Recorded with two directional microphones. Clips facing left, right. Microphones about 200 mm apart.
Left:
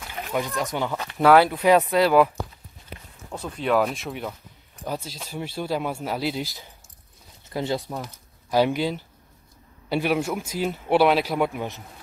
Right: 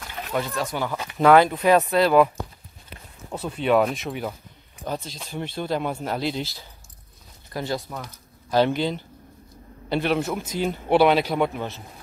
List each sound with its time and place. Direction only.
0.0 s a sound: 10° left (ahead or behind)
0.9 s a man's voice: centre (ahead or behind)
3.3 s a man's voice: 5° right (ahead or behind)
7.5 s a man's voice: 20° left (ahead or behind)